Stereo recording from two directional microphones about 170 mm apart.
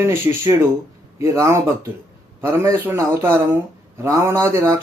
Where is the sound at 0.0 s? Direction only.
15° right (ahead or behind).